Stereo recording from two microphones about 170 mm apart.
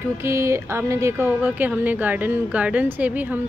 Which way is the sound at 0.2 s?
15° right (ahead or behind).